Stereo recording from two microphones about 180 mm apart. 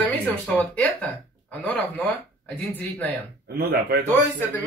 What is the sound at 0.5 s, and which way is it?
Speech, 5° left (ahead or behind).